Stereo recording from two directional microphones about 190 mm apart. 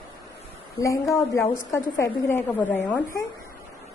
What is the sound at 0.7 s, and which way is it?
A woman's voice, 15° left (ahead or behind).